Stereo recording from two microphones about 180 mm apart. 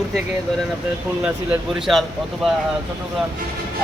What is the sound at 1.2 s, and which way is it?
Speech, 5° right (ahead or behind).